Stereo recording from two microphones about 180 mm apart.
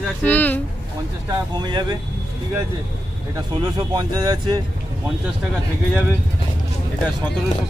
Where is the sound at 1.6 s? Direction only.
25° right (ahead or behind).